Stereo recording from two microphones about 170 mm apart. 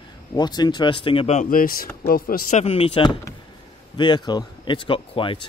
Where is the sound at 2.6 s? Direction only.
35° left (ahead or behind).